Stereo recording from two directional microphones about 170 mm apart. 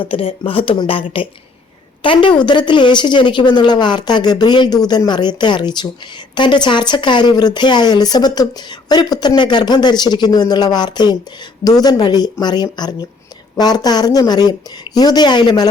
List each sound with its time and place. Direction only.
0.0 s speech: 30° left (ahead or behind)